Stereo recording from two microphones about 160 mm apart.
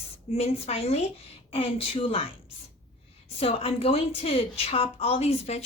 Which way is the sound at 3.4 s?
40° left (ahead or behind).